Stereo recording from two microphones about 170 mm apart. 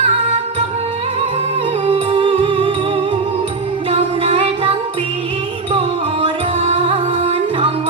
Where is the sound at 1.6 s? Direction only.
30° right (ahead or behind).